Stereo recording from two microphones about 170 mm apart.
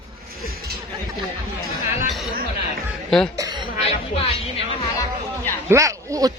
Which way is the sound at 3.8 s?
35° left (ahead or behind).